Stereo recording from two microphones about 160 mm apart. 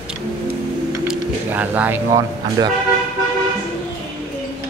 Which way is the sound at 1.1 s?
10° right (ahead or behind).